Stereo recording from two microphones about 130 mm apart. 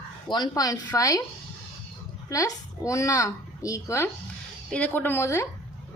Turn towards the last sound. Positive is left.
turn(degrees=20)  # may be behind; listen again after turning